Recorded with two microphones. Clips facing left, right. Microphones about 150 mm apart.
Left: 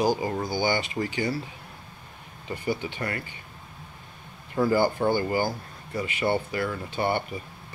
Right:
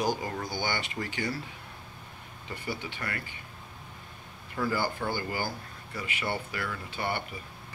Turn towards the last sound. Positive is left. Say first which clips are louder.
# left 7 dB
turn(degrees=30)  # may be behind; listen again after turning